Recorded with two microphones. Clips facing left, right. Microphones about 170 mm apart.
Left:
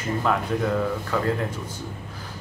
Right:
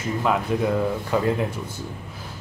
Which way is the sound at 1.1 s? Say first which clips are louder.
Right 4 dB; 20° right (ahead or behind).